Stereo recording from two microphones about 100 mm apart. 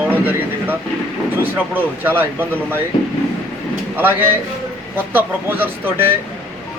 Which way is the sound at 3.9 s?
20° right (ahead or behind).